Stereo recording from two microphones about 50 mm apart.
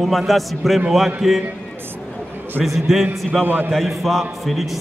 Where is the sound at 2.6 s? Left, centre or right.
Centre.